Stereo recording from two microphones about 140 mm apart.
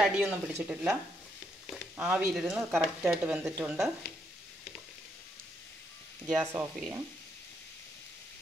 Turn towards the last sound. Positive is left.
turn(degrees=-20)  # may be behind; listen again after turning